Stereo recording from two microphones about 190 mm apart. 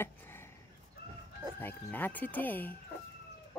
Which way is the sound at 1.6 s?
10° left (ahead or behind).